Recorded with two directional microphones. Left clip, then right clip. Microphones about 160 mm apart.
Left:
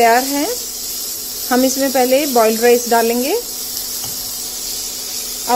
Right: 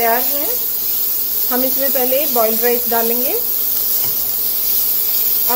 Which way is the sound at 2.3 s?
65° left (ahead or behind).